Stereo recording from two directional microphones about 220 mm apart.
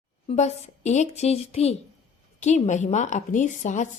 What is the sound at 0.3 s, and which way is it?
A woman's voice, 30° left (ahead or behind).